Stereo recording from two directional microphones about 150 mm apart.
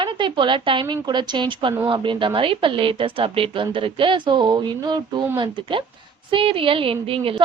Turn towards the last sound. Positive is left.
turn(degrees=-40)  # may be behind; listen again after turning